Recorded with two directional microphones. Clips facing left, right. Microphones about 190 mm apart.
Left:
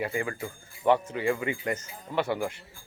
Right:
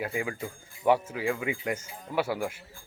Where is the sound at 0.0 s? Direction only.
5° right (ahead or behind).